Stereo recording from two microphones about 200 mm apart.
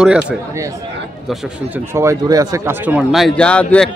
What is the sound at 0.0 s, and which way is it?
Speech, 5° right (ahead or behind).